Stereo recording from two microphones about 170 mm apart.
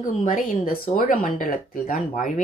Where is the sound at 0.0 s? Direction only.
50° left (ahead or behind).